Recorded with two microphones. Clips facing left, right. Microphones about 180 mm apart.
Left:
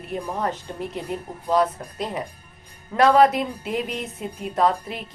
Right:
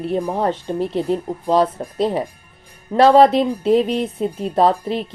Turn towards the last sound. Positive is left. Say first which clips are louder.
# right 6 dB
turn(degrees=-30)  # may be behind; listen again after turning